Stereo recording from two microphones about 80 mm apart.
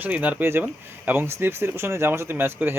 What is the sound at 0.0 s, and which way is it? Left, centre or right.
Speech, centre.